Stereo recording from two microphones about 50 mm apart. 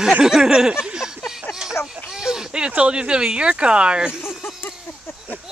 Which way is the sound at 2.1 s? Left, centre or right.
Centre.